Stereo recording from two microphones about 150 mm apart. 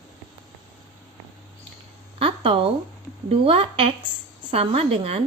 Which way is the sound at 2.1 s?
35° right (ahead or behind).